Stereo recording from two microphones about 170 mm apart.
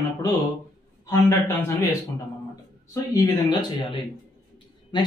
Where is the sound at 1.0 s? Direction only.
20° left (ahead or behind).